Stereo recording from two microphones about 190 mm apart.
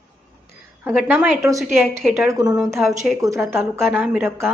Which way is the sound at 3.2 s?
15° right (ahead or behind).